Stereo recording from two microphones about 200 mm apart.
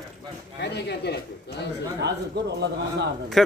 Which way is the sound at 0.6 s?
55° left (ahead or behind).